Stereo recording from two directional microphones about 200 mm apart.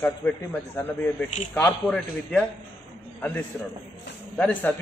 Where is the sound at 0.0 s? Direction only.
10° left (ahead or behind).